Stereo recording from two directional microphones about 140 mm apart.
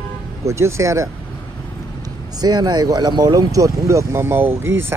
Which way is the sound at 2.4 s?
30° right (ahead or behind).